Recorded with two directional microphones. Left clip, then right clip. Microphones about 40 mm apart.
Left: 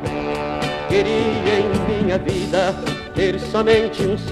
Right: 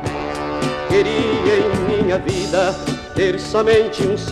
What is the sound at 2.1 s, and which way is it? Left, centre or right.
Music, right.